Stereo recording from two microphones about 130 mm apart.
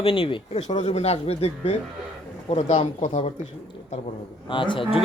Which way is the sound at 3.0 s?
65° left (ahead or behind).